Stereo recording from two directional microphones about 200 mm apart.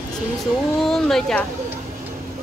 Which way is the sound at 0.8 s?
Centre (ahead or behind).